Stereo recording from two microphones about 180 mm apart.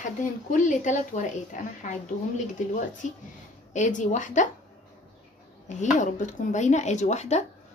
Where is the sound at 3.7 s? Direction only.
45° left (ahead or behind).